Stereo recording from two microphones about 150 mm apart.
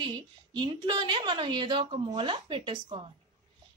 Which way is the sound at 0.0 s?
30° right (ahead or behind).